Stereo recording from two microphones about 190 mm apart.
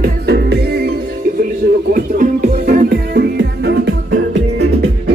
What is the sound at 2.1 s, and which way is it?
Music, 45° right (ahead or behind).